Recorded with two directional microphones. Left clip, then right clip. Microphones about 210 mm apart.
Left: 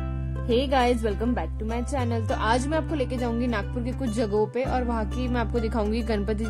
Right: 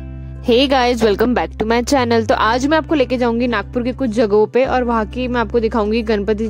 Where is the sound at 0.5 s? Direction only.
45° right (ahead or behind).